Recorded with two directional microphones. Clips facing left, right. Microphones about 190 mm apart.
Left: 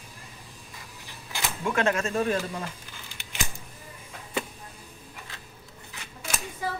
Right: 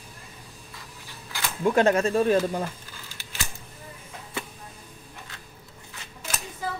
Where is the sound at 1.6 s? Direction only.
35° right (ahead or behind).